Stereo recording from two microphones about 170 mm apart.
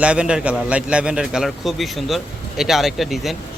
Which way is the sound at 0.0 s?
5° right (ahead or behind).